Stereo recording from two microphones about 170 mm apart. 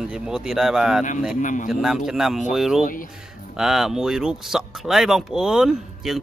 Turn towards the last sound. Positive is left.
turn(degrees=-5)  # may be behind; listen again after turning